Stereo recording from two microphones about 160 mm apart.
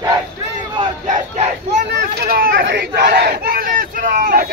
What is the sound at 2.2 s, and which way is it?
Crowd, 70° right (ahead or behind).